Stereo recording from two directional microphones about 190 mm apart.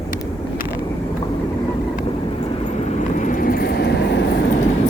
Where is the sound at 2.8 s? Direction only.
40° left (ahead or behind); by 4.3 s 65° left (ahead or behind).